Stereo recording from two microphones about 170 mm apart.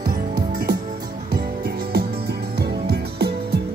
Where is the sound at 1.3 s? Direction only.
65° right (ahead or behind).